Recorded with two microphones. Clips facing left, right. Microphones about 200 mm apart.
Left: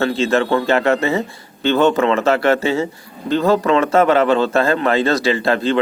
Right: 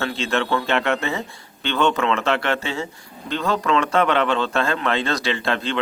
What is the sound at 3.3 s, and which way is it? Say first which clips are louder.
Speech: left 7 dB; 35° left (ahead or behind).